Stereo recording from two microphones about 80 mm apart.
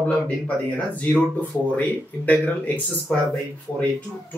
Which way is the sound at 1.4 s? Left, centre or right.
Centre.